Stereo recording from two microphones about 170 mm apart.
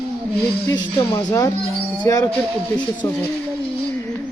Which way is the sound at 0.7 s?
25° left (ahead or behind).